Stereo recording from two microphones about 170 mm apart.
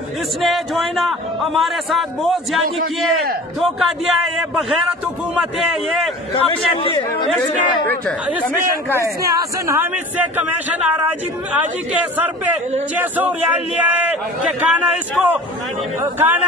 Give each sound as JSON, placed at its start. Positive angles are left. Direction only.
{"t": 0.4, "sound": "speech", "side_deg": 0}
{"t": 3.6, "sound": "speech", "side_deg": 0}
{"t": 6.3, "sound": "a man's voice", "side_deg": 30}
{"t": 7.2, "sound": "speech", "side_deg": 5}
{"t": 9.0, "sound": "speech", "side_deg": -20}